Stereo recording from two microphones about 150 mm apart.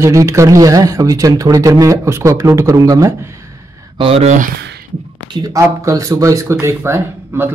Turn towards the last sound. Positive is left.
turn(degrees=-15)  # may be behind; listen again after turning